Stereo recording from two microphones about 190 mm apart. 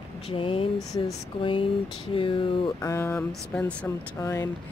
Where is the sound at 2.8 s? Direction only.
15° left (ahead or behind).